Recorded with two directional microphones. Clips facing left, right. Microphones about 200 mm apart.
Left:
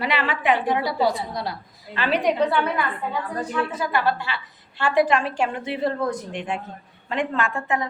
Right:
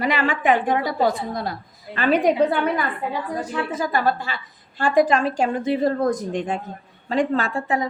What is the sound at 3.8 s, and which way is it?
A woman's voice, 45° right (ahead or behind).